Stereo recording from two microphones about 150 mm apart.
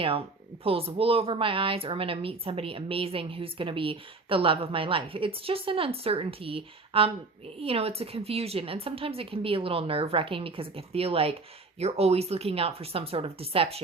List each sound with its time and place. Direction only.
0.0 s a woman's voice: 40° right (ahead or behind)